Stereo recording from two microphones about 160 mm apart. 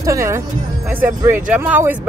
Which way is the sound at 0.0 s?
20° right (ahead or behind).